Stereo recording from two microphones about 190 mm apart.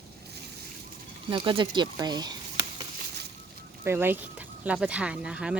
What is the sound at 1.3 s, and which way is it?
Speech, 25° right (ahead or behind).